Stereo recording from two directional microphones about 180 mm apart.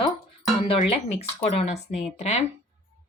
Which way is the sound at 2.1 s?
40° left (ahead or behind).